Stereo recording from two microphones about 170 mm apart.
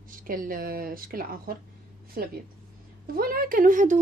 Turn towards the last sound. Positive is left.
turn(degrees=-50)  # may be behind; listen again after turning